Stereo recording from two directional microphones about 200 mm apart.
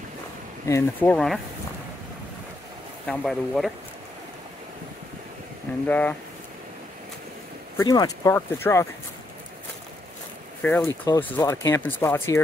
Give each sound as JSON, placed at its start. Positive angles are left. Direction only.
{"t": 0.7, "sound": "speech", "side_deg": 10}
{"t": 3.1, "sound": "speech", "side_deg": 5}
{"t": 5.9, "sound": "speech", "side_deg": 10}
{"t": 7.7, "sound": "speech", "side_deg": 20}
{"t": 10.6, "sound": "speech", "side_deg": 10}